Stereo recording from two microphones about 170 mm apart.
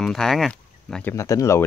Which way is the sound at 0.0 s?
5° left (ahead or behind).